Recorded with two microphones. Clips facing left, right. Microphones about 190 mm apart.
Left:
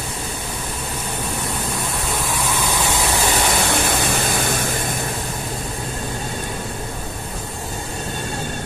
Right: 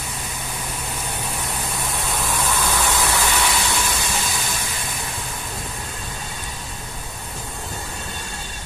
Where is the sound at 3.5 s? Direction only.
55° left (ahead or behind).